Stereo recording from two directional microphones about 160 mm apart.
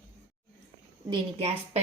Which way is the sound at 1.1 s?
40° right (ahead or behind).